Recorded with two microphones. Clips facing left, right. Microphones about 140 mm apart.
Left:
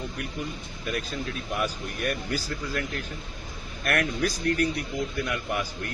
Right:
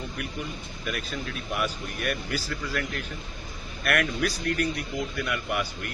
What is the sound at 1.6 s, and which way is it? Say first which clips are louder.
Speech: left 1 dB; 35° left (ahead or behind).